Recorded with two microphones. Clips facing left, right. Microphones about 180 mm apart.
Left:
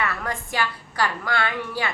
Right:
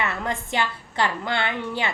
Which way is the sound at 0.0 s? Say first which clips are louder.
Right 1 dB; 25° right (ahead or behind).